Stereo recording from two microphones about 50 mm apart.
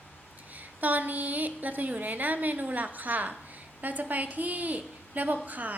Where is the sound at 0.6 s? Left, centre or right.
Right.